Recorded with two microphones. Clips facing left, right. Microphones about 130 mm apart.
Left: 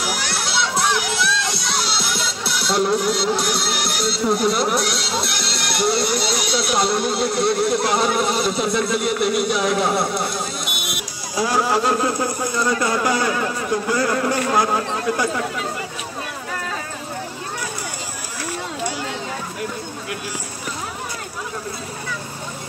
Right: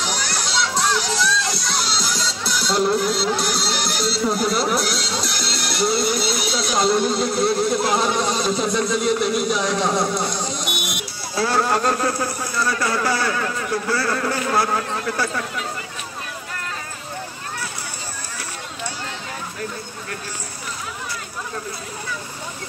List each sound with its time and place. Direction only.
0.0 s music: 10° left (ahead or behind)
11.3 s speech: 15° left (ahead or behind)